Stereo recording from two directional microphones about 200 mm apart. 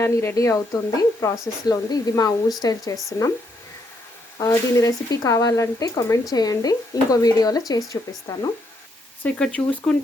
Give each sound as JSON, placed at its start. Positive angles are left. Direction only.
{"t": 0.0, "sound": "speech", "side_deg": 15}
{"t": 4.4, "sound": "speech", "side_deg": 15}
{"t": 9.2, "sound": "speech", "side_deg": 5}